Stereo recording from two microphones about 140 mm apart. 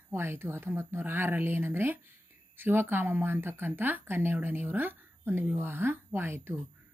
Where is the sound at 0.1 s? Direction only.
15° right (ahead or behind).